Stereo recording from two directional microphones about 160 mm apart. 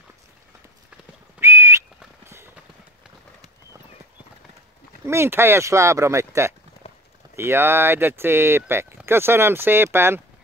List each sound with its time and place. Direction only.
1.4 s whistle: 15° right (ahead or behind)
2.2 s clip-clop: 15° right (ahead or behind)
5.0 s speech: 15° right (ahead or behind)
6.8 s clip-clop: 40° left (ahead or behind)
7.3 s speech: 15° right (ahead or behind)